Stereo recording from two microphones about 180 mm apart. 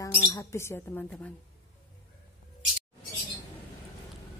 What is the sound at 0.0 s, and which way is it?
Speech, 20° left (ahead or behind).